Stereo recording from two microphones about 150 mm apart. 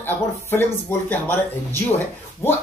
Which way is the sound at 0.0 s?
15° left (ahead or behind).